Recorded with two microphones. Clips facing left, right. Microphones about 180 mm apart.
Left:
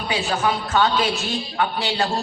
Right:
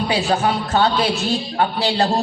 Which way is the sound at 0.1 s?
35° right (ahead or behind).